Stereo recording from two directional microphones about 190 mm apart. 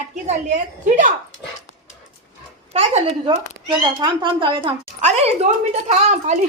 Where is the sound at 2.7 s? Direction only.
30° right (ahead or behind).